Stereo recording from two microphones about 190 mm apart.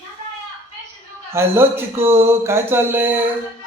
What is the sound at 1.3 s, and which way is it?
Speech, 15° right (ahead or behind).